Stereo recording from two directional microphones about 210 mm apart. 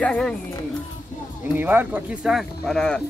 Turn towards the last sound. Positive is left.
turn(degrees=5)  # may be behind; listen again after turning